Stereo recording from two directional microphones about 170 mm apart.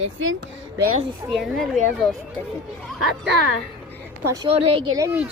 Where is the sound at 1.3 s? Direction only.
Centre (ahead or behind).